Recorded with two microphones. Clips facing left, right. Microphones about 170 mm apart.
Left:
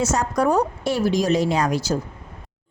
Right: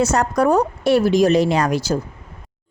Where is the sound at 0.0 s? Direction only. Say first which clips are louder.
Right 4 dB; 60° right (ahead or behind).